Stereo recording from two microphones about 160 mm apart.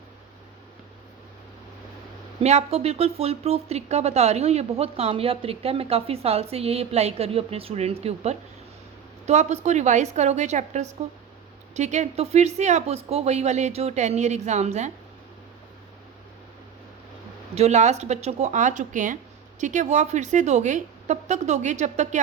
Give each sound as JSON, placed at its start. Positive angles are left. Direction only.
{"t": 2.4, "sound": "a woman's voice", "side_deg": -40}
{"t": 17.5, "sound": "speech", "side_deg": -45}